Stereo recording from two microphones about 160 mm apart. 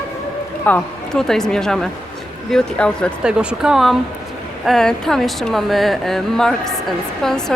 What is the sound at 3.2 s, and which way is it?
Speech, 5° right (ahead or behind).